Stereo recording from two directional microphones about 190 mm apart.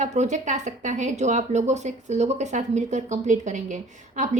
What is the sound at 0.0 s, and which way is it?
Speech, 40° right (ahead or behind).